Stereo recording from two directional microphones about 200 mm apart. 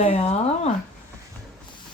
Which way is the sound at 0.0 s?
35° left (ahead or behind).